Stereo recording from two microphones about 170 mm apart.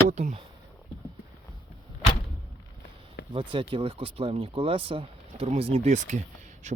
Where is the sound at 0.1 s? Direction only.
45° right (ahead or behind).